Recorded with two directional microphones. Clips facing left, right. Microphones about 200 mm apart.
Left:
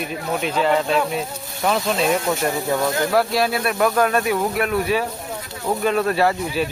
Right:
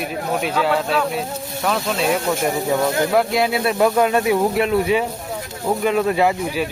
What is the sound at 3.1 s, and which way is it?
Speech, 20° right (ahead or behind).